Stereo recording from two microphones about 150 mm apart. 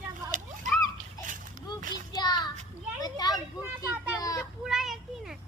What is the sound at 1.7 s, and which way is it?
Child singing, 30° left (ahead or behind).